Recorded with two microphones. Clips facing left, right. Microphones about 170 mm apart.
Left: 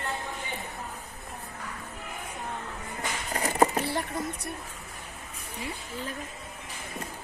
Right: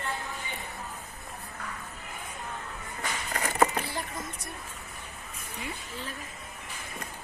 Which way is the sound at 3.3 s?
25° left (ahead or behind).